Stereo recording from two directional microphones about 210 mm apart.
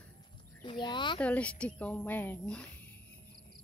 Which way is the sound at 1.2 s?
5° left (ahead or behind).